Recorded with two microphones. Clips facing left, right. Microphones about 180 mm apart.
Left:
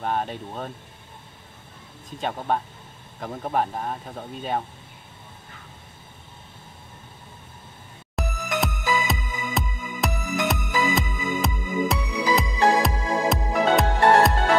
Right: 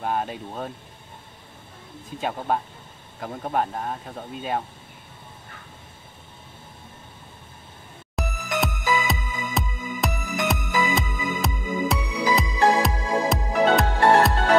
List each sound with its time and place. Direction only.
0.0 s speech: 5° right (ahead or behind)
2.1 s speech: 5° right (ahead or behind)
8.2 s music: centre (ahead or behind)